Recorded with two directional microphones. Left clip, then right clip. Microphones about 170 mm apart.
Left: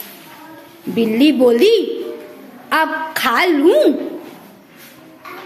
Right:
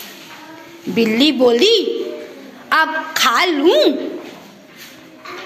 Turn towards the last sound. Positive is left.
turn(degrees=30)  # may be behind; listen again after turning